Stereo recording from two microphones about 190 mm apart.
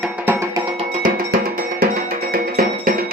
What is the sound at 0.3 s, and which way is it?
Music, 15° right (ahead or behind).